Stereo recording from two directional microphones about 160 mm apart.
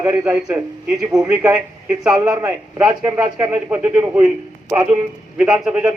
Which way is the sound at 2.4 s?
10° right (ahead or behind).